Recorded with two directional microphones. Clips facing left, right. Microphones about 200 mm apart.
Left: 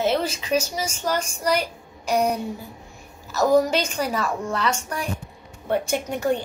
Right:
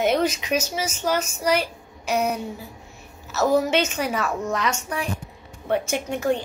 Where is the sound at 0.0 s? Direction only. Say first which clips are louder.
Right 2 dB; 30° left (ahead or behind).